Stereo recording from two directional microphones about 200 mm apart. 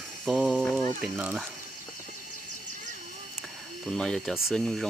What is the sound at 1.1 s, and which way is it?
Speech, 10° right (ahead or behind).